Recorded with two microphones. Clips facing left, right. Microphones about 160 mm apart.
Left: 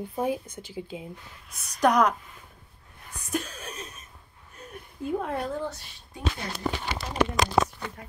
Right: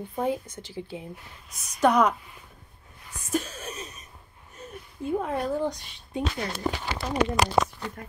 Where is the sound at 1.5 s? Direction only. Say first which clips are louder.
Right 1 dB; 5° right (ahead or behind).